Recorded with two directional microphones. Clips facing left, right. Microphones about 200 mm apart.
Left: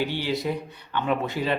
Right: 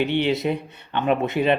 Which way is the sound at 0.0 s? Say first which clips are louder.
Right 5 dB; 20° right (ahead or behind).